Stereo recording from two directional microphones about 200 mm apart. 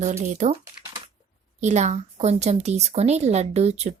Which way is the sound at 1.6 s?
35° right (ahead or behind).